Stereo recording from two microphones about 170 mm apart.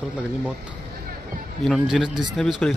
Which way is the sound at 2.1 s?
25° right (ahead or behind).